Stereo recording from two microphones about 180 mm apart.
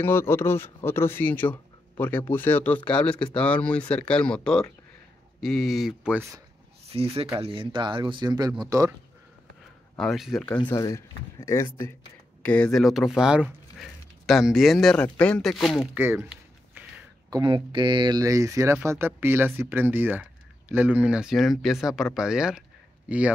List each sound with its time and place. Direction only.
0.0 s speech: 15° left (ahead or behind); by 6.2 s 5° right (ahead or behind)
6.9 s speech: 35° right (ahead or behind)
9.9 s speech: centre (ahead or behind)
10.6 s speech: 20° left (ahead or behind); by 16.8 s 10° right (ahead or behind)
17.3 s speech: 25° right (ahead or behind); by 23.3 s 5° right (ahead or behind)